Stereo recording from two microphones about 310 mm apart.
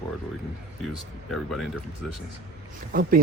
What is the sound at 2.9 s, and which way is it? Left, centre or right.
Speech, right.